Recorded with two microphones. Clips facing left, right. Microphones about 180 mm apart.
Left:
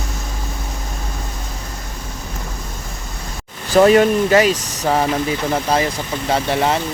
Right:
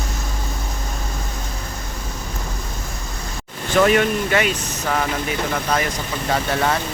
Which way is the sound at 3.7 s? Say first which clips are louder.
Left 5 dB; 35° left (ahead or behind).